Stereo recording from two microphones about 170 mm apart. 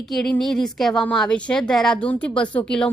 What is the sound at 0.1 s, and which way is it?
A woman's voice, centre (ahead or behind).